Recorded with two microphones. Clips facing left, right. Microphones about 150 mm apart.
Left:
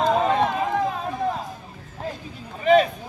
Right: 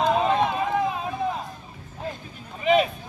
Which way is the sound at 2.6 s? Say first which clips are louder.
Left 3 dB; 5° right (ahead or behind).